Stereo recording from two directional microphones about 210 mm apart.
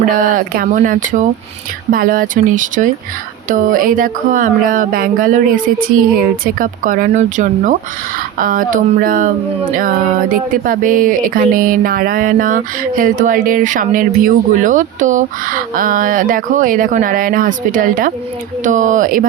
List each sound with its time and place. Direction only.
0.1 s speech: 40° right (ahead or behind)